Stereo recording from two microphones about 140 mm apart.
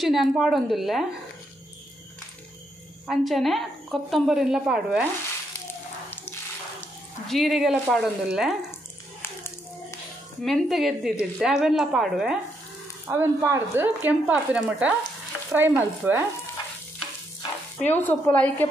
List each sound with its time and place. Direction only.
0.0 s a woman's voice: centre (ahead or behind)
3.1 s a woman's voice: centre (ahead or behind)
7.2 s a woman's voice: centre (ahead or behind)
9.2 s a sound: 15° left (ahead or behind)
10.4 s a woman's voice: centre (ahead or behind)
13.1 s speech: 20° right (ahead or behind)
17.7 s a woman's voice: 10° left (ahead or behind)